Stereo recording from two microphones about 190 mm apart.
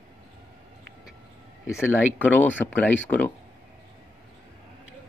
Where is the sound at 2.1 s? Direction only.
10° left (ahead or behind).